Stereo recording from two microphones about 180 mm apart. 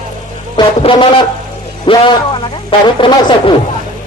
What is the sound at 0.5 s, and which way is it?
Speech, 30° left (ahead or behind).